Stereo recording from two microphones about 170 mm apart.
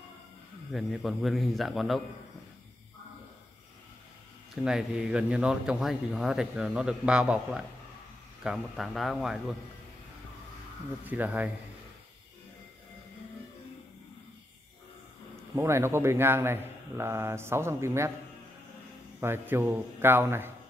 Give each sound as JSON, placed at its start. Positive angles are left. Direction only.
{"t": 0.7, "sound": "speech", "side_deg": 0}
{"t": 4.6, "sound": "speech", "side_deg": -5}
{"t": 11.1, "sound": "speech", "side_deg": -10}
{"t": 15.5, "sound": "speech", "side_deg": -15}
{"t": 19.1, "sound": "speech", "side_deg": -15}